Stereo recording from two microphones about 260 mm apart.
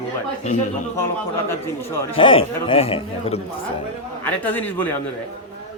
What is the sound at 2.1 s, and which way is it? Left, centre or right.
A man's voice, centre.